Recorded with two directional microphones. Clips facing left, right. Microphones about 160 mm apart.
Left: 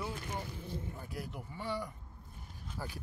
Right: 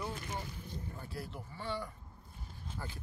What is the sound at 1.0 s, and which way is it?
Speech, 15° left (ahead or behind).